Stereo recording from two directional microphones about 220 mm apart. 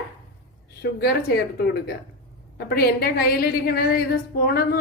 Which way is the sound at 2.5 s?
45° left (ahead or behind).